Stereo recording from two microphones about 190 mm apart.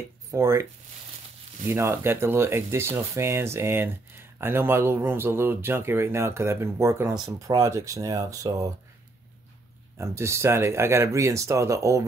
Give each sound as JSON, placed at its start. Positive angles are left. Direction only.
{"t": 0.3, "sound": "speech", "side_deg": -15}
{"t": 1.7, "sound": "speech", "side_deg": -15}
{"t": 9.9, "sound": "speech", "side_deg": -15}